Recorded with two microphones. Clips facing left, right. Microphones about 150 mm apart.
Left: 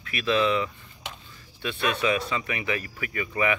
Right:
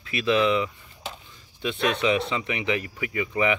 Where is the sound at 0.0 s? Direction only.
25° right (ahead or behind).